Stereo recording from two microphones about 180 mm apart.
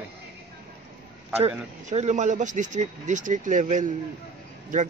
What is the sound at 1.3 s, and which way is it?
Speech, 35° right (ahead or behind).